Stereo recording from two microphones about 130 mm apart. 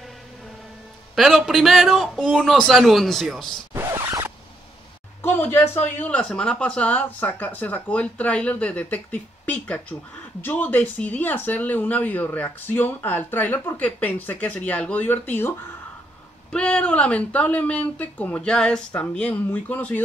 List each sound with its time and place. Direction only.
1.1 s a man's voice: centre (ahead or behind)
3.7 s zipper: 20° right (ahead or behind)
5.2 s speech: 15° left (ahead or behind)
16.5 s speech: 10° left (ahead or behind)